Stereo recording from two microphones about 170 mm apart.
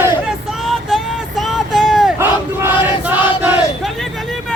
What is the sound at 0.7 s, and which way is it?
Vehicle, centre (ahead or behind).